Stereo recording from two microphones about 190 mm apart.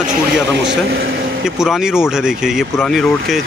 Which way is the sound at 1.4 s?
5° right (ahead or behind).